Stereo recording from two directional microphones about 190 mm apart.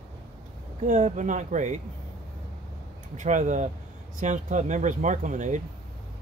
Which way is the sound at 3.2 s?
40° right (ahead or behind).